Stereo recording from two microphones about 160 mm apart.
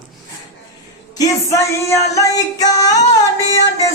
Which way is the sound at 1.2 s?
20° left (ahead or behind).